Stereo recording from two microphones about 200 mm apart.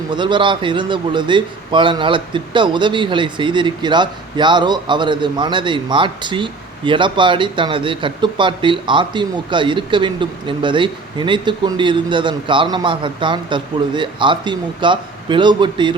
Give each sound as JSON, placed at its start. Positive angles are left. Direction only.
{"t": 0.1, "sound": "a man's voice", "side_deg": -25}